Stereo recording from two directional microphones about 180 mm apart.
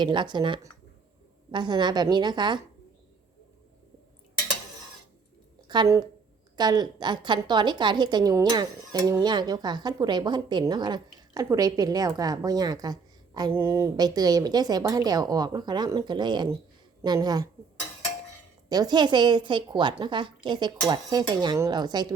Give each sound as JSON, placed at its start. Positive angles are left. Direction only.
{"t": 0.0, "sound": "a woman's voice", "side_deg": -25}
{"t": 5.6, "sound": "a woman's voice", "side_deg": -25}
{"t": 18.7, "sound": "a woman's voice", "side_deg": -20}